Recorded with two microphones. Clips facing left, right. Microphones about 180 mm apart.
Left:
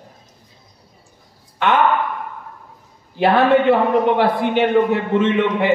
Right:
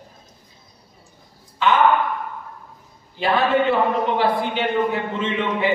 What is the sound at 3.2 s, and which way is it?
A man's voice, 60° left (ahead or behind).